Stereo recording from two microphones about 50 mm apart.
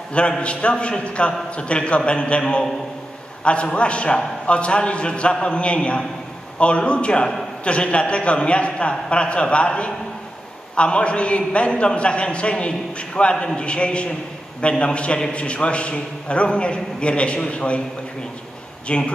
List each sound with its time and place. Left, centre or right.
0.4 s a man's voice: left
18.9 s a man's voice: left